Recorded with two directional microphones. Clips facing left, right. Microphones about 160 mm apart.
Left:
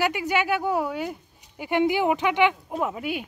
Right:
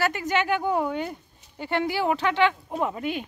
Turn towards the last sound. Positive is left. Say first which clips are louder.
# even
turn(degrees=10)  # may be behind; listen again after turning